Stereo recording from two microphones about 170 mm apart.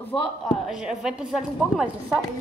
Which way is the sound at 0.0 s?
5° left (ahead or behind).